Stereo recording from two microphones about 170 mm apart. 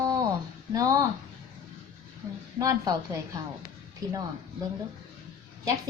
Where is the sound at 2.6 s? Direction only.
20° right (ahead or behind).